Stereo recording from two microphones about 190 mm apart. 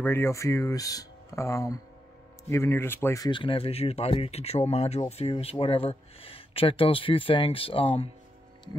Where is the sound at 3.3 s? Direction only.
25° left (ahead or behind).